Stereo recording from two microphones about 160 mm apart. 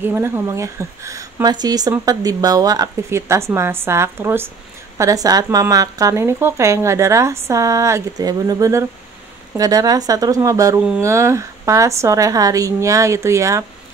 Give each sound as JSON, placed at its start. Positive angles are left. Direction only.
{"t": 0.0, "sound": "a woman's voice", "side_deg": -15}